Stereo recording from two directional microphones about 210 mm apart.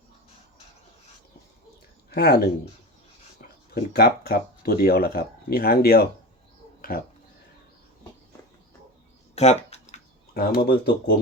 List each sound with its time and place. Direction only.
2.0 s speech: 50° left (ahead or behind)
3.9 s speech: 50° left (ahead or behind)
9.3 s a sound: 30° left (ahead or behind)
10.3 s speech: 45° left (ahead or behind)